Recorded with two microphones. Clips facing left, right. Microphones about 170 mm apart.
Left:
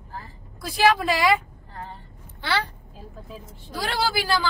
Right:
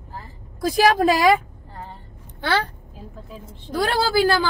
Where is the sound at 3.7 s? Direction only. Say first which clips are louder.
Right 5 dB; 55° right (ahead or behind).